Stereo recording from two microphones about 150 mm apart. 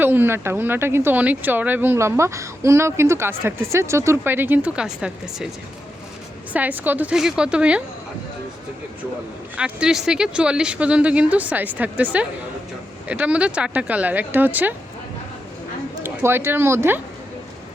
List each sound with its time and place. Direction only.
0.0 s speech: 15° right (ahead or behind)
6.5 s speech: 10° right (ahead or behind)
9.6 s speech: 5° right (ahead or behind)
16.0 s speech: 15° right (ahead or behind)